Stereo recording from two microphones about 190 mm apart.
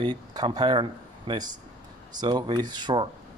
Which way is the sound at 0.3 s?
20° right (ahead or behind).